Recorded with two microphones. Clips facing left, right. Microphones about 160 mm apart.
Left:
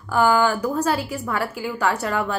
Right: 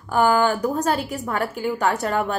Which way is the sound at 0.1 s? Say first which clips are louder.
Even; 45° right (ahead or behind).